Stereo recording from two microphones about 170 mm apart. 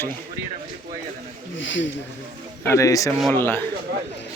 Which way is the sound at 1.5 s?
90° left.